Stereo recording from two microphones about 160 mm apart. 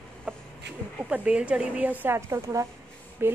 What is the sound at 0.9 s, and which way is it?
Speech, 5° right (ahead or behind).